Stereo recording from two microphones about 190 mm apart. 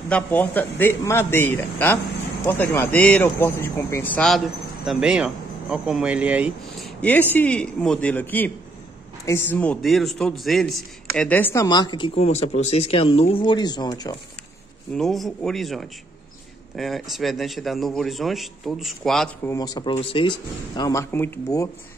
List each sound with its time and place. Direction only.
0.1 s a man's voice: 10° left (ahead or behind); by 6.9 s 5° right (ahead or behind)
7.0 s a man's voice: 10° left (ahead or behind)
15.0 s a man's voice: centre (ahead or behind)
19.4 s a man's voice: 20° left (ahead or behind)